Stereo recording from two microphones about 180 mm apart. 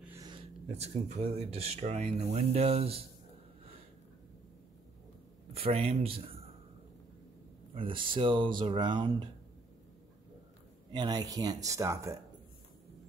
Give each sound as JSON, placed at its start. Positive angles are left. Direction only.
{"t": 0.0, "sound": "a sound", "side_deg": -15}
{"t": 0.3, "sound": "speech", "side_deg": -35}
{"t": 5.5, "sound": "speech", "side_deg": -35}
{"t": 7.7, "sound": "speech", "side_deg": -30}
{"t": 10.9, "sound": "speech", "side_deg": -25}